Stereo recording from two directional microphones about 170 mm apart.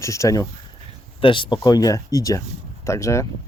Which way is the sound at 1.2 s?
30° left (ahead or behind).